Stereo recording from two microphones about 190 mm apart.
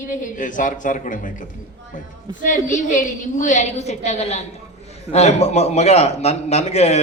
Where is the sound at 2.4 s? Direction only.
40° left (ahead or behind).